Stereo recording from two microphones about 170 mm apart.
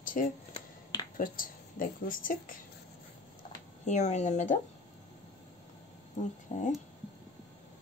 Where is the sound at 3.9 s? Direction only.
45° left (ahead or behind).